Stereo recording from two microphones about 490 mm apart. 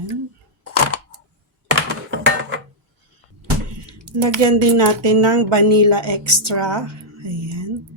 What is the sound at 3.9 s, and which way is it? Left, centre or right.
Speech, right.